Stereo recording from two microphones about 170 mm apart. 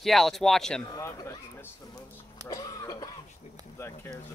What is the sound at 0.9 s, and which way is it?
Speech, 15° left (ahead or behind).